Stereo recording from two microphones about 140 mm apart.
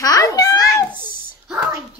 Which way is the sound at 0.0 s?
25° left (ahead or behind).